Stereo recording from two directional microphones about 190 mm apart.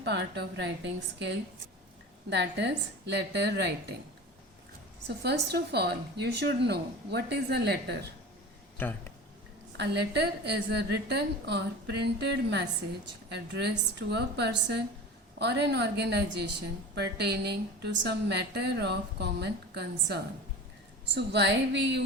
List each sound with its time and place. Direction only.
0.0 s a woman's voice: 60° right (ahead or behind)
2.3 s a woman's voice: 65° right (ahead or behind)
5.0 s a woman's voice: 60° right (ahead or behind)
8.8 s speech: 10° left (ahead or behind)
9.7 s a woman's voice: 65° right (ahead or behind)